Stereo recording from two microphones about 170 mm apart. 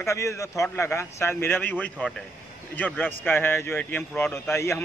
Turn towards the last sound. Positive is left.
turn(degrees=15)  # may be behind; listen again after turning